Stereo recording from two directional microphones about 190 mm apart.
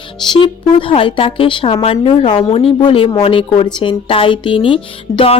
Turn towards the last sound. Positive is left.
turn(degrees=30)  # may be behind; listen again after turning